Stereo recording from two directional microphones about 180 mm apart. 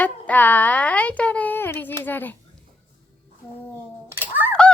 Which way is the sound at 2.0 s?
10° left (ahead or behind).